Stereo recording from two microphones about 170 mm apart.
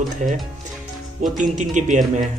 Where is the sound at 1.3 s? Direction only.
45° right (ahead or behind).